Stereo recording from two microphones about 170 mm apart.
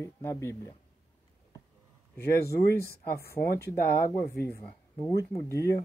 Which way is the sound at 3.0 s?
65° left (ahead or behind).